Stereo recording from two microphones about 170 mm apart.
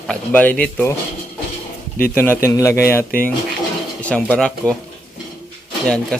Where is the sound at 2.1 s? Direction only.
10° left (ahead or behind).